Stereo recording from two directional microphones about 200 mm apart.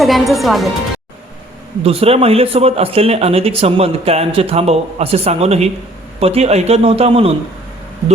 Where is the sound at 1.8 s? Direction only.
30° right (ahead or behind).